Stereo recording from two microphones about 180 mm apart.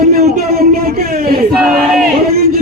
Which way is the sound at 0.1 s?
60° right (ahead or behind).